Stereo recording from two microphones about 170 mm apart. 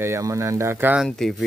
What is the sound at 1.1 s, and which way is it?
Speech, 5° left (ahead or behind).